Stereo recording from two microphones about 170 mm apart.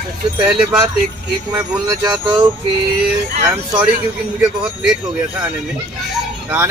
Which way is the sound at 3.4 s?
10° right (ahead or behind).